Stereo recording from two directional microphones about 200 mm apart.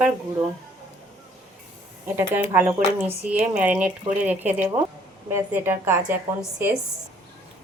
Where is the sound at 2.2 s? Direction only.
10° right (ahead or behind).